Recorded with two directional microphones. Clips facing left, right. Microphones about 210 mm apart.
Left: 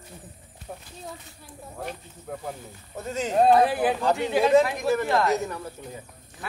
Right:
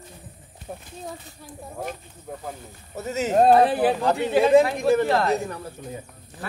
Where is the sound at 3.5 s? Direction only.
35° right (ahead or behind).